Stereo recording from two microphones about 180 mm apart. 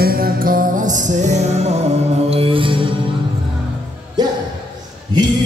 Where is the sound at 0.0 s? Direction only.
55° right (ahead or behind); by 2.8 s 30° right (ahead or behind).